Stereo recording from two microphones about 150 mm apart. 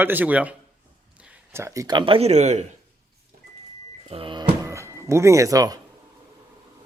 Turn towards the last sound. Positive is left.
turn(degrees=-25)  # may be behind; listen again after turning